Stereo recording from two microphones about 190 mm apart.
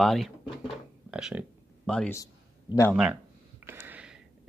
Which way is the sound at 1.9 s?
10° left (ahead or behind).